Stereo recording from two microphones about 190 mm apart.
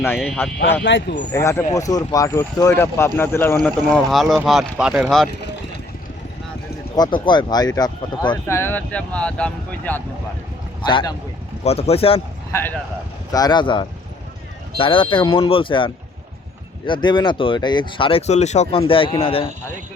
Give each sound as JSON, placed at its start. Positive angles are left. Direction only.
{"t": 0.4, "sound": "speech", "side_deg": 10}
{"t": 0.8, "sound": "speech", "side_deg": 70}
{"t": 1.3, "sound": "speech", "side_deg": 15}
{"t": 6.9, "sound": "speech", "side_deg": 20}
{"t": 8.5, "sound": "speech", "side_deg": 10}
{"t": 10.8, "sound": "speech", "side_deg": 25}
{"t": 12.5, "sound": "speech", "side_deg": 10}